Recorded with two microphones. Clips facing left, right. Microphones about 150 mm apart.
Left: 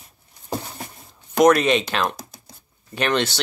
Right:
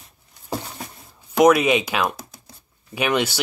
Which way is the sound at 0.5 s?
Centre (ahead or behind).